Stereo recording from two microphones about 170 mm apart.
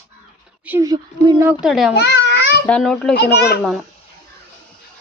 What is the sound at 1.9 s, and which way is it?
Babbling, 85° left.